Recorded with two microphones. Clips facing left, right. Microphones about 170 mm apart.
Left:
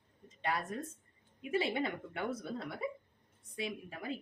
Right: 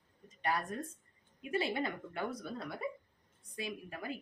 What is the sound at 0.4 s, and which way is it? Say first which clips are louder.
Speech: right 1 dB; 20° left (ahead or behind).